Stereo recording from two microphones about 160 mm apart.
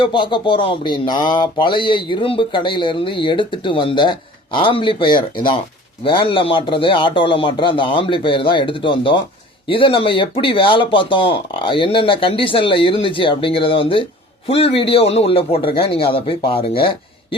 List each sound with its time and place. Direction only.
0.0 s speech: 30° left (ahead or behind)